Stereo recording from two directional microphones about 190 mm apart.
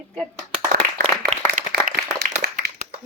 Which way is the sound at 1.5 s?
50° right (ahead or behind).